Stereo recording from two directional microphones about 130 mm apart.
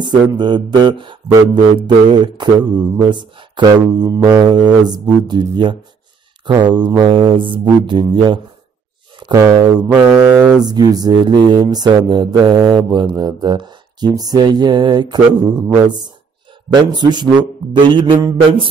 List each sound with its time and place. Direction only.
0.0 s speech: 35° right (ahead or behind)
9.3 s speech: 25° right (ahead or behind)
10.0 s mantra: 5° right (ahead or behind)
10.6 s speech: 30° right (ahead or behind)
16.7 s speech: 35° right (ahead or behind)